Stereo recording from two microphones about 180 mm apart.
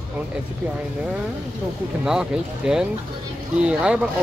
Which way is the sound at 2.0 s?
5° right (ahead or behind).